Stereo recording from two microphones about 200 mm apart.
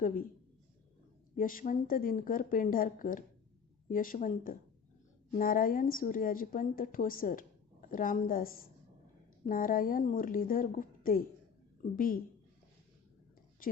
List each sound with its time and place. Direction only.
0.0 s a woman's voice: 40° left (ahead or behind)
1.4 s a woman's voice: 45° left (ahead or behind)